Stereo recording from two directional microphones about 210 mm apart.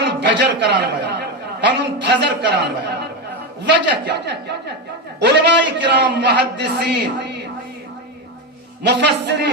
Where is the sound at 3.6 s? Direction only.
55° right (ahead or behind).